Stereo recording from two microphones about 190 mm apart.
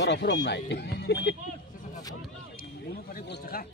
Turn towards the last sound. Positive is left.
turn(degrees=55)  # may be behind; listen again after turning